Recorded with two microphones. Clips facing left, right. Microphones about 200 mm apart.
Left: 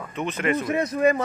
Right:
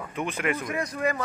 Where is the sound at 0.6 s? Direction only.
25° left (ahead or behind).